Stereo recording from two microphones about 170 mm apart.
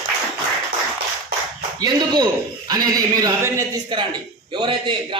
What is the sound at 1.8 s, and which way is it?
A man's voice, 25° right (ahead or behind).